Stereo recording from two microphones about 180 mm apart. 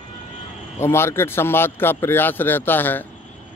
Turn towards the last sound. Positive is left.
turn(degrees=10)  # may be behind; listen again after turning